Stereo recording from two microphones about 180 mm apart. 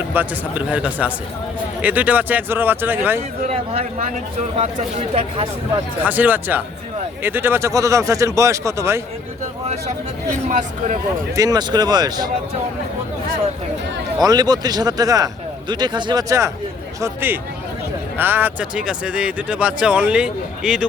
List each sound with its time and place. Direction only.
0.1 s speech: 10° right (ahead or behind)
4.5 s speech: 35° right (ahead or behind)
6.0 s speech: 10° right (ahead or behind)
10.6 s speech: 45° right (ahead or behind)
11.3 s speech: 20° right (ahead or behind)
14.2 s speech: 20° right (ahead or behind); by 20.8 s 5° right (ahead or behind)